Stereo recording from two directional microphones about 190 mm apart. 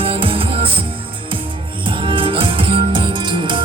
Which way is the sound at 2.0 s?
25° right (ahead or behind).